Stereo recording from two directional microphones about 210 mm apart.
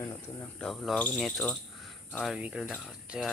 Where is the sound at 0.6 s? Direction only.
Centre (ahead or behind).